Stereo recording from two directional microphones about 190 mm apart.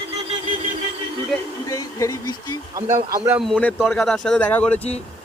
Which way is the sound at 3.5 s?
5° left (ahead or behind).